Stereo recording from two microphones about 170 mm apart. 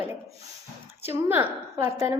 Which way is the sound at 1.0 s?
15° right (ahead or behind).